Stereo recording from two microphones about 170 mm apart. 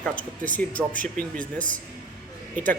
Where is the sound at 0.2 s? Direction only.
55° right (ahead or behind).